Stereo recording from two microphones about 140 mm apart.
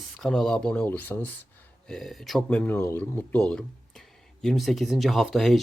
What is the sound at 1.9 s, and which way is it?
Speech, centre (ahead or behind).